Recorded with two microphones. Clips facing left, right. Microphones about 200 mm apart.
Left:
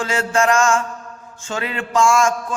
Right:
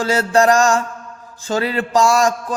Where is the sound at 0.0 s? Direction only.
35° right (ahead or behind).